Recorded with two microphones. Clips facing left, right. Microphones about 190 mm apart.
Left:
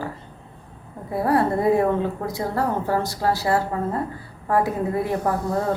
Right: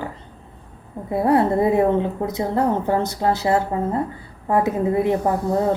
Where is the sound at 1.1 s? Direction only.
20° right (ahead or behind).